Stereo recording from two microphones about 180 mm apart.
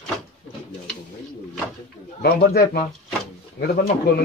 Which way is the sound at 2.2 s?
60° left (ahead or behind).